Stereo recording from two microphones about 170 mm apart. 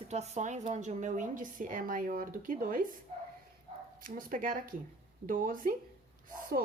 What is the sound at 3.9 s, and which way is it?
Speech, 55° right (ahead or behind).